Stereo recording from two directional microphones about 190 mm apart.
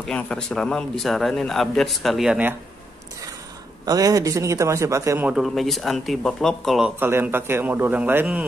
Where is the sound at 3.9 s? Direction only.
20° right (ahead or behind).